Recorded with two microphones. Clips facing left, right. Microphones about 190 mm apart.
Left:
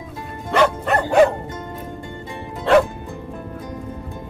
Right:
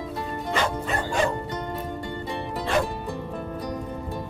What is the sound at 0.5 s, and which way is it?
Music, 65° left (ahead or behind).